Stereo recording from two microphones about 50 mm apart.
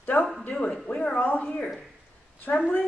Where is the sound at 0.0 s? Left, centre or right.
Left.